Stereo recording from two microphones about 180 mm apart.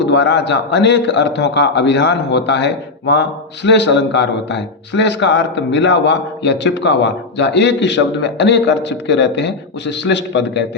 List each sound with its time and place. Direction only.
0.0 s a man's voice: 75° left (ahead or behind)